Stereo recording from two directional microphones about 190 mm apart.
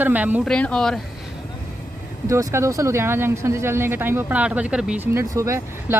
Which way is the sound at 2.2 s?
15° right (ahead or behind).